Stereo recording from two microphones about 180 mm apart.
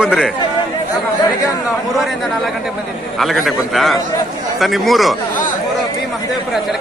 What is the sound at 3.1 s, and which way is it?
A man's voice, centre (ahead or behind).